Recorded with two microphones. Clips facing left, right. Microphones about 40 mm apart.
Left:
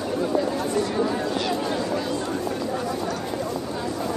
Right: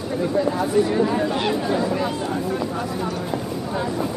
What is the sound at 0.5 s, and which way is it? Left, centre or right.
Speech, centre.